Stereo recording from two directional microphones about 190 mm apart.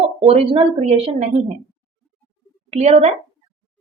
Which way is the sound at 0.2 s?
30° right (ahead or behind).